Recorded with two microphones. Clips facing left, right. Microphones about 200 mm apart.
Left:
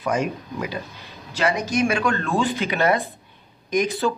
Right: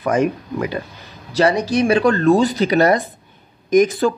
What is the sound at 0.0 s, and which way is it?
Speech, 55° right (ahead or behind).